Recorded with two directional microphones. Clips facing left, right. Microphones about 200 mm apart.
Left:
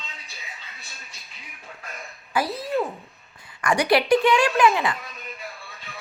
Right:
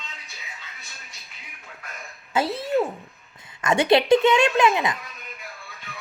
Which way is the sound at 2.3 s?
25° right (ahead or behind).